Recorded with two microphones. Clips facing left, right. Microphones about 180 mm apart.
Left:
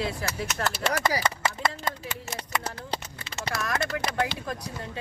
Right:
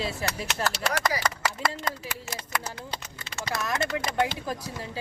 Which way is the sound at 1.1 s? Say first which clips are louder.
Left 1 dB; 25° left (ahead or behind).